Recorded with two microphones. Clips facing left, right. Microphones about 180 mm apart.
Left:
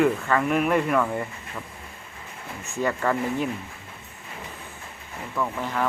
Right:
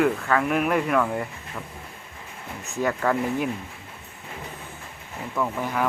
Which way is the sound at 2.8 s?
5° right (ahead or behind).